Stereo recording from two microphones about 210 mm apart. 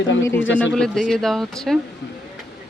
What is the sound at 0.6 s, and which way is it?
Speech, 5° left (ahead or behind).